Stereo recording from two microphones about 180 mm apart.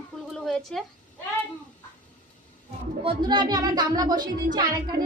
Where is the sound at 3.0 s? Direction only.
25° right (ahead or behind).